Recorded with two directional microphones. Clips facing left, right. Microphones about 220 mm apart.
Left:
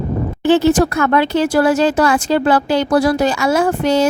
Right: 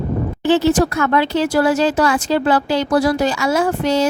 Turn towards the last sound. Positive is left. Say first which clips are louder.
# left 2 dB
turn(degrees=55)  # may be behind; listen again after turning